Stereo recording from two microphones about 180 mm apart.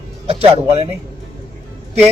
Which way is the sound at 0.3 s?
35° right (ahead or behind).